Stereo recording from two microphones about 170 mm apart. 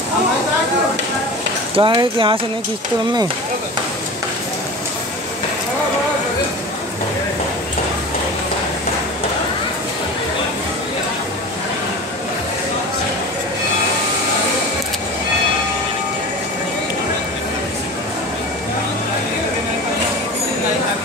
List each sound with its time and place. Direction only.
1.8 s speech: 30° right (ahead or behind)